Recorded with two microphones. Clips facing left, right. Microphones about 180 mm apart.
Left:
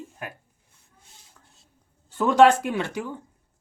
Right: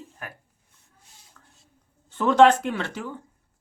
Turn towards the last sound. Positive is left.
turn(degrees=15)  # may be behind; listen again after turning